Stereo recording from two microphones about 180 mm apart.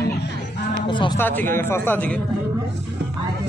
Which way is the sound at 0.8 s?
25° left (ahead or behind).